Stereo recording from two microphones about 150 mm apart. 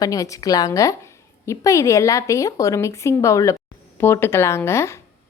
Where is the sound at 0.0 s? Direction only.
20° left (ahead or behind).